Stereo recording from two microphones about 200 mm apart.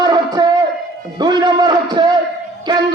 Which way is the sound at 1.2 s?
20° right (ahead or behind).